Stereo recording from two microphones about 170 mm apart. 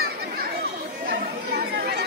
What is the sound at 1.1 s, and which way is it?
Chatter, 70° right (ahead or behind).